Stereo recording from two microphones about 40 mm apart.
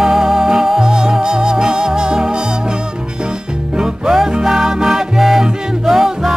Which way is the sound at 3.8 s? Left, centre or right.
Centre.